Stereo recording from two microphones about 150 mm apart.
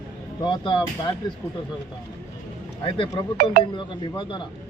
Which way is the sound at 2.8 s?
35° left (ahead or behind).